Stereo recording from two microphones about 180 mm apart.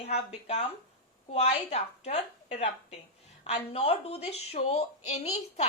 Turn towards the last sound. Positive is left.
turn(degrees=35)  # may be behind; listen again after turning